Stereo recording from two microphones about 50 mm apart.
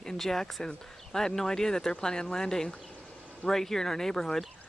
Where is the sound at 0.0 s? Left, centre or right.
Centre.